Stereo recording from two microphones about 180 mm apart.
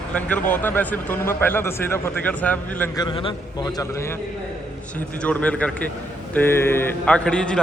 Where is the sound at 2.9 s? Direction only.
25° left (ahead or behind).